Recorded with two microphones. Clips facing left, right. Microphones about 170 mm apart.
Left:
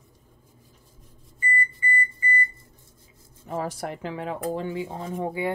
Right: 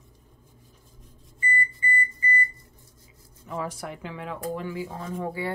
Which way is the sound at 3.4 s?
40° left (ahead or behind).